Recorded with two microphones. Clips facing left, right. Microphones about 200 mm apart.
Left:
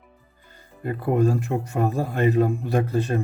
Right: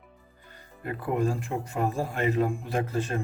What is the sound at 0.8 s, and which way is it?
Speech, 35° left (ahead or behind).